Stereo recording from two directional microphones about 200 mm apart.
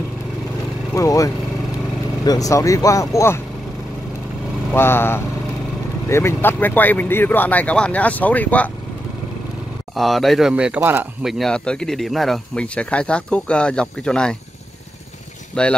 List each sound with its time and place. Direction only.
0.9 s speech: 15° left (ahead or behind)
4.7 s speech: 10° left (ahead or behind)
9.9 s speech: centre (ahead or behind)
15.5 s speech: 5° left (ahead or behind)